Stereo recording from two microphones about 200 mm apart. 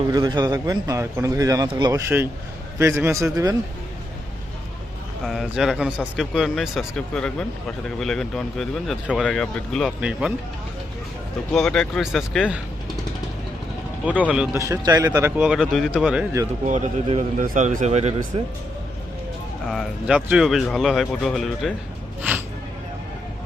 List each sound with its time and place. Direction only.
0.1 s a man's voice: 20° right (ahead or behind)
5.2 s speech: centre (ahead or behind)
11.5 s speech: centre (ahead or behind)
14.0 s a man's voice: 5° right (ahead or behind)
14.6 s a man's voice: 15° right (ahead or behind)
15.4 s speech: 5° right (ahead or behind)
16.6 s a man's voice: 35° right (ahead or behind)
19.6 s speech: centre (ahead or behind)